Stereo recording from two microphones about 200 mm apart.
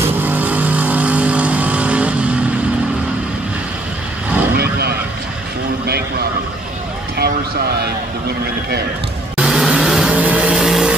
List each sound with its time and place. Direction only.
0.0 s vehicle: 10° right (ahead or behind)
4.6 s vehicle: 50° right (ahead or behind)
5.9 s a sound: 50° right (ahead or behind)
9.4 s vehicle: 5° right (ahead or behind)